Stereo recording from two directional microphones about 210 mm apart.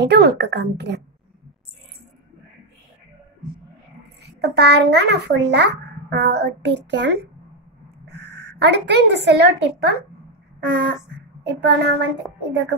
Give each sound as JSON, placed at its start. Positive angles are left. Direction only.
{"t": 0.0, "sound": "a woman's voice", "side_deg": -55}
{"t": 4.4, "sound": "a child's voice", "side_deg": -55}